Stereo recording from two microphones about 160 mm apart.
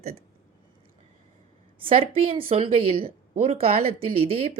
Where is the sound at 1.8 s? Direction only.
35° right (ahead or behind).